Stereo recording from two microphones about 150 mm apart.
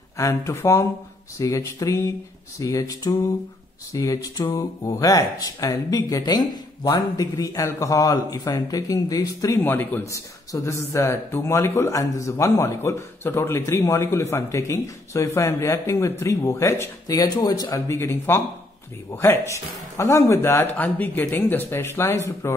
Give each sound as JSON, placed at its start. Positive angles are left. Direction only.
{"t": 0.2, "sound": "speech", "side_deg": 20}